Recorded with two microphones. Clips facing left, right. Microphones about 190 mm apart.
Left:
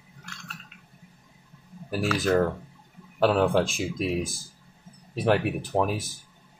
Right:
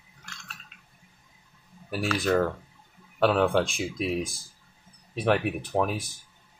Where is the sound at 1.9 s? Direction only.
Centre (ahead or behind).